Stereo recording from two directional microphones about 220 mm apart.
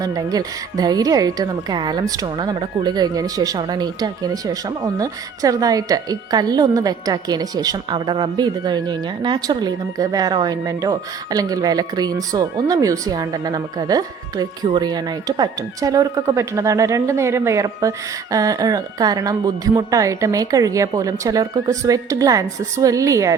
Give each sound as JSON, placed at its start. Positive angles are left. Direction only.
{"t": 0.0, "sound": "a woman's voice", "side_deg": -15}